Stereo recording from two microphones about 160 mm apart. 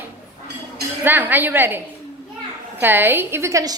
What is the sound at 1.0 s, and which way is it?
Speech, 10° right (ahead or behind).